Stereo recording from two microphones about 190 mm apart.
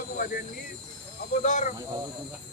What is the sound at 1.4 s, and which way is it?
Speech, 40° left (ahead or behind).